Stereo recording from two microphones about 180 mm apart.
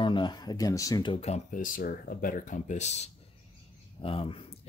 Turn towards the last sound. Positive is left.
turn(degrees=30)  # may be behind; listen again after turning